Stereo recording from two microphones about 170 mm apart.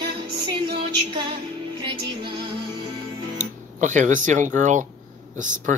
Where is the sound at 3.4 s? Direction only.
45° right (ahead or behind).